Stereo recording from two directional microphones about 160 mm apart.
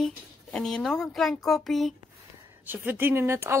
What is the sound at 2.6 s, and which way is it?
Speech, 10° right (ahead or behind).